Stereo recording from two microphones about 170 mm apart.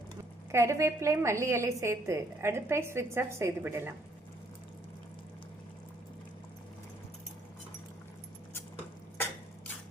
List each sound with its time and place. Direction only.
0.5 s a woman's voice: 15° right (ahead or behind)